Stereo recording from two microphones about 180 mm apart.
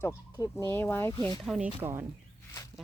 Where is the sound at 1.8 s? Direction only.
15° right (ahead or behind).